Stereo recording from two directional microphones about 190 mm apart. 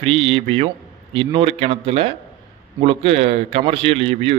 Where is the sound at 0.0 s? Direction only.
30° right (ahead or behind).